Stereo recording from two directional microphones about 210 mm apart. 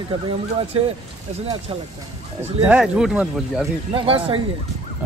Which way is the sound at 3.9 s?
25° right (ahead or behind).